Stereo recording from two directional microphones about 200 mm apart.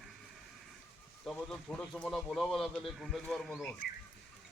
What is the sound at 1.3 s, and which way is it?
A man's voice, 5° left (ahead or behind).